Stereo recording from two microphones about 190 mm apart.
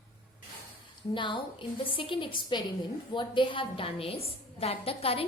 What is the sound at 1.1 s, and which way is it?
A woman's voice, 25° left (ahead or behind).